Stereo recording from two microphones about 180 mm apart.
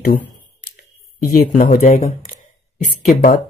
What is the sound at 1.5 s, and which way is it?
Speech, 45° left (ahead or behind).